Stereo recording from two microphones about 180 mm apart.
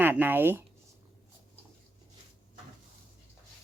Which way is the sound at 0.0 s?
10° right (ahead or behind).